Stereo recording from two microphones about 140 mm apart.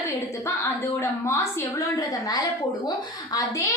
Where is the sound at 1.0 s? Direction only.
20° left (ahead or behind).